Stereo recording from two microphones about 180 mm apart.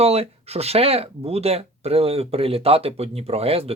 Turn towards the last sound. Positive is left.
turn(degrees=-35)  # may be behind; listen again after turning